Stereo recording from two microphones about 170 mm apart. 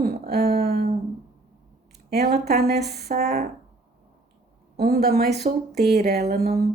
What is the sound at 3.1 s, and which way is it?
Speech, 50° right (ahead or behind).